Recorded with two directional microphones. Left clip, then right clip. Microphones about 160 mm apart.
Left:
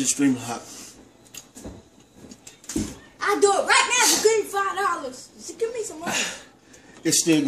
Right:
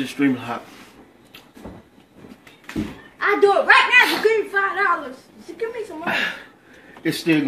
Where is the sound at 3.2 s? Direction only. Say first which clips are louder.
Right 4 dB; centre (ahead or behind).